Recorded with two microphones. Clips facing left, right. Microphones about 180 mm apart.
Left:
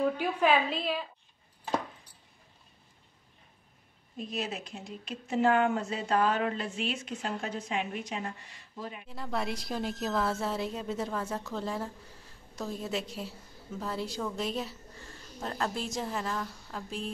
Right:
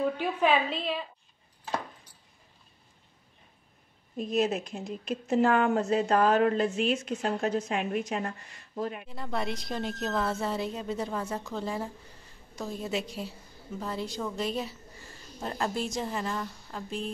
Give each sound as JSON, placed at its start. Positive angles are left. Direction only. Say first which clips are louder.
{"t": 0.0, "sound": "a woman's voice", "louder": "even", "side_deg": 0}
{"t": 4.2, "sound": "speech", "louder": "right 8 dB", "side_deg": -45}
{"t": 9.0, "sound": "a woman's voice", "louder": "right 1 dB", "side_deg": 0}